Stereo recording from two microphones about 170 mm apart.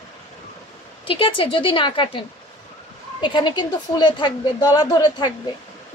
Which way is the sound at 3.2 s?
25° left (ahead or behind).